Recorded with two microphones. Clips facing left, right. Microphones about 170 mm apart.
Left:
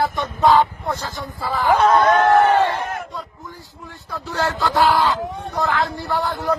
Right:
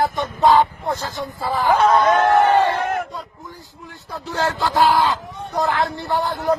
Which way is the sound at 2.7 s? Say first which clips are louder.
Right 3 dB; 65° right (ahead or behind).